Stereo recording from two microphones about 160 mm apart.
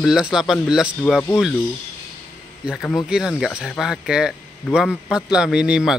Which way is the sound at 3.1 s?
5° right (ahead or behind).